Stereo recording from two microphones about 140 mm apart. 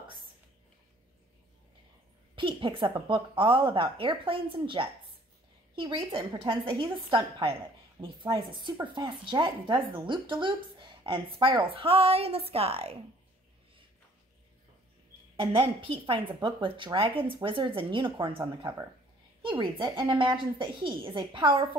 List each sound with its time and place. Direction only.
0.0 s whispering: 35° right (ahead or behind)
2.3 s a woman's voice: 35° right (ahead or behind)
15.3 s a woman's voice: 40° right (ahead or behind)
18.4 s speech: 25° right (ahead or behind)
19.4 s a woman's voice: 35° right (ahead or behind)